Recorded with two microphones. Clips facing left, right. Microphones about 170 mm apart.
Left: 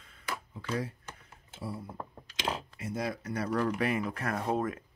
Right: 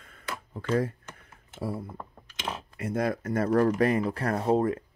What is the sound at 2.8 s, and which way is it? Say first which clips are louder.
Speech: right 7 dB; 55° right (ahead or behind).